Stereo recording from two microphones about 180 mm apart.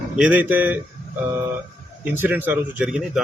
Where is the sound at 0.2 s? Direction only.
10° right (ahead or behind).